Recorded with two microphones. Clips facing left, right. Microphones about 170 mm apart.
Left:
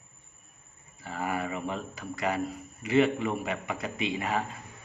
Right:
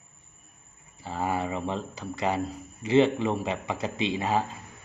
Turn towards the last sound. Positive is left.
turn(degrees=-30)  # may be behind; listen again after turning